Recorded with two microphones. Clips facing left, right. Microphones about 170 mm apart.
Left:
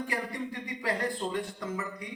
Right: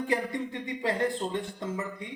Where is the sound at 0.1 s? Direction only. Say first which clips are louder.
Right 5 dB; 25° right (ahead or behind).